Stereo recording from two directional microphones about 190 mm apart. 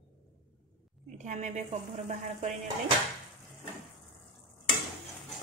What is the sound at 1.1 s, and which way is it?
A woman's voice, 40° right (ahead or behind).